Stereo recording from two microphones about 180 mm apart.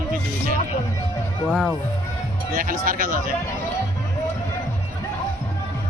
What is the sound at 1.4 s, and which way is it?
Speech, 5° left (ahead or behind).